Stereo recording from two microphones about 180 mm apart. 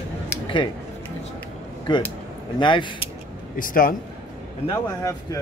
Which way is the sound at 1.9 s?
25° left (ahead or behind).